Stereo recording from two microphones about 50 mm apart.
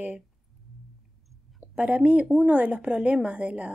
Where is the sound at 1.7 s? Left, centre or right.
Right.